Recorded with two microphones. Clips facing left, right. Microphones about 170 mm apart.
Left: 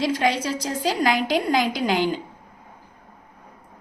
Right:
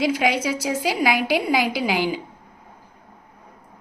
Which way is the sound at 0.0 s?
10° right (ahead or behind).